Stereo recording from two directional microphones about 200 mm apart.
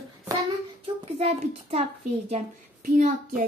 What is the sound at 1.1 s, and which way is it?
A woman's voice, 35° right (ahead or behind).